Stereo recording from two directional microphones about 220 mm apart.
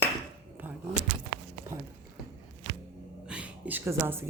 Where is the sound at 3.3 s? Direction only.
5° right (ahead or behind).